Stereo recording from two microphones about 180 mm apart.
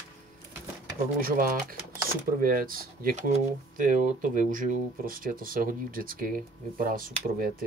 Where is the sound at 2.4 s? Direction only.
50° right (ahead or behind).